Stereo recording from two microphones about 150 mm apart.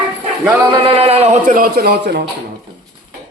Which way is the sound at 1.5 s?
85° right.